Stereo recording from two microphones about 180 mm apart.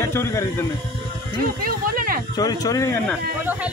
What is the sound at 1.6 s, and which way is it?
Speech, 55° right (ahead or behind).